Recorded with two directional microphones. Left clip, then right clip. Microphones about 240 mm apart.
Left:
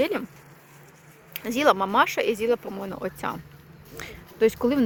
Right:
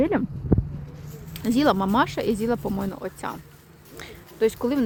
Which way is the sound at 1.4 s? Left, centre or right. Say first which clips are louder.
Left 1 dB; centre.